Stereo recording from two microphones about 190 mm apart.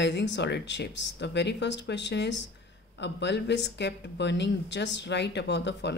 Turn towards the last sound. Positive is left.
turn(degrees=65)  # may be behind; listen again after turning